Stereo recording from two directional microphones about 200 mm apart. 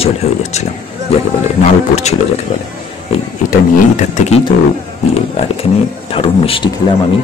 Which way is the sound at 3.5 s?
35° left (ahead or behind).